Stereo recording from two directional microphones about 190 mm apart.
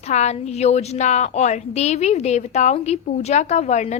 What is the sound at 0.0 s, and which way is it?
A woman's voice, 35° left (ahead or behind).